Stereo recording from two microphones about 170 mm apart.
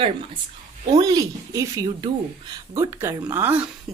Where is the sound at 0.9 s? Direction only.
20° right (ahead or behind).